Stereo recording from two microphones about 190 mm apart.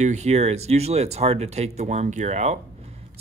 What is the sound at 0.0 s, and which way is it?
A man's voice, 35° right (ahead or behind).